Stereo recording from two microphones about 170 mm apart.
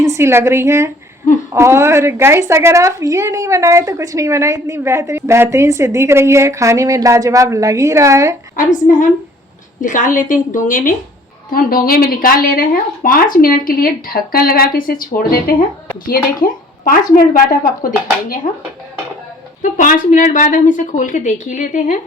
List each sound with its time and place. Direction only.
0.0 s a woman's voice: 15° right (ahead or behind)
8.5 s a woman's voice: 50° left (ahead or behind)
19.7 s a woman's voice: 50° left (ahead or behind)